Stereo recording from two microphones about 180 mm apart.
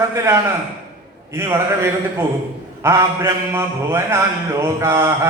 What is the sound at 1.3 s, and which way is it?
A man's voice, 15° right (ahead or behind).